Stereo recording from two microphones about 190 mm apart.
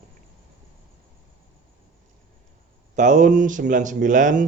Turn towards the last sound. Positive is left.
turn(degrees=-45)  # may be behind; listen again after turning